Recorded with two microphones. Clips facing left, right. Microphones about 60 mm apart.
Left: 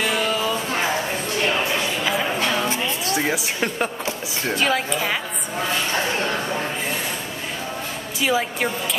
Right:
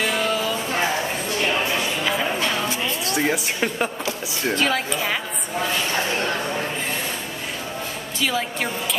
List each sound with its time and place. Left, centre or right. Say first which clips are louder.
0.0 s music: even; centre
2.0 s a sound: left 1 dB; centre
3.2 s speech: right 2 dB; centre
8.2 s a woman's voice: left 3 dB; centre